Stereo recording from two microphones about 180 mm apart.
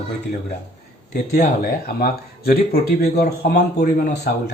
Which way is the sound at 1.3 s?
55° left (ahead or behind).